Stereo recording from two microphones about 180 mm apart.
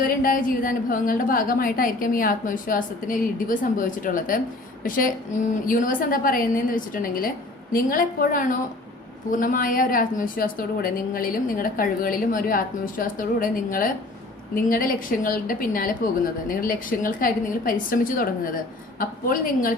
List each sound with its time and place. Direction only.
0.0 s a woman's voice: 50° left (ahead or behind)